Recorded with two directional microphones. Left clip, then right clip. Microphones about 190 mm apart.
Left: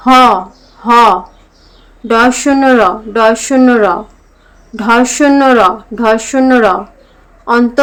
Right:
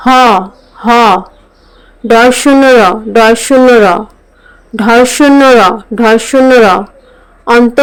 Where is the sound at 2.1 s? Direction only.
35° right (ahead or behind).